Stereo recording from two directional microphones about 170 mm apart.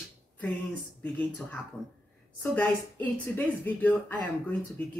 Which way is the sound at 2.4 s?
10° left (ahead or behind).